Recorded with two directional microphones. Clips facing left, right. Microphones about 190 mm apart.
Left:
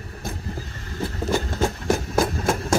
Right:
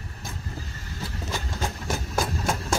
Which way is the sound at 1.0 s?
55° left (ahead or behind).